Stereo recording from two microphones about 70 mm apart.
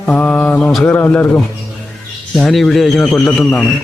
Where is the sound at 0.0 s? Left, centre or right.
Centre.